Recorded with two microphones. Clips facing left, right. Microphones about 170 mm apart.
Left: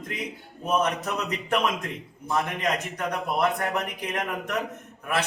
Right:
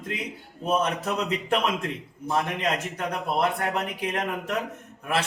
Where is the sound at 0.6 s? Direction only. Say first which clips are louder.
Even; 30° right (ahead or behind).